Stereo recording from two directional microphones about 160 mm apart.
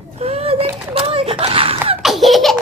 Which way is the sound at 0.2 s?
40° right (ahead or behind).